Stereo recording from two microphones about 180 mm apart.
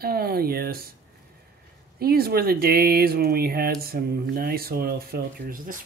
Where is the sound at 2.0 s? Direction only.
60° right (ahead or behind).